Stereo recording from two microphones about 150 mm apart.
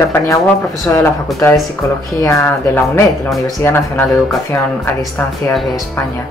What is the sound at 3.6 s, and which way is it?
Speech, 15° left (ahead or behind).